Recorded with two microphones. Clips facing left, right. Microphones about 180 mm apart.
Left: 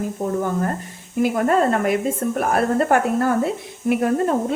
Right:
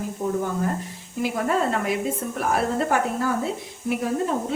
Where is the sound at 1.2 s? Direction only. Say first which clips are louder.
Left 6 dB; 55° left (ahead or behind).